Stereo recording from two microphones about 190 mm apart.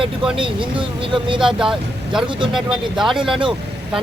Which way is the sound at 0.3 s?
25° right (ahead or behind).